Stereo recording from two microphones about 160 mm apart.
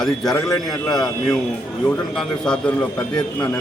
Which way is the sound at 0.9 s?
Centre (ahead or behind).